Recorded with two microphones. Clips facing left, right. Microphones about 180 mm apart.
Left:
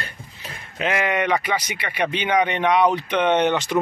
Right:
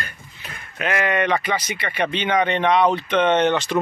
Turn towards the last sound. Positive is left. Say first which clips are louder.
# right 1 dB
turn(degrees=10)  # may be behind; listen again after turning